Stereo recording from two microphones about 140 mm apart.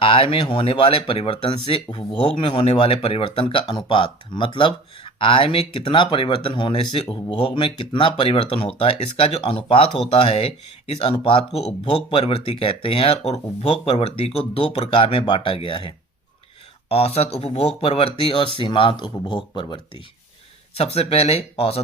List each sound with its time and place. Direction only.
0.0 s speech: 40° left (ahead or behind)
20.7 s speech: 45° left (ahead or behind)